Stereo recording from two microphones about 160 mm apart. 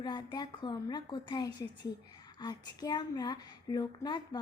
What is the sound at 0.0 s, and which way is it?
A woman's voice, 30° left (ahead or behind).